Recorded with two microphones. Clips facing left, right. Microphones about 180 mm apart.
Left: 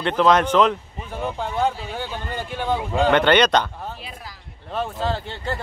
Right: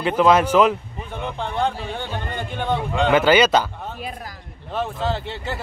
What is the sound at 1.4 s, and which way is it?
Speech, 5° left (ahead or behind).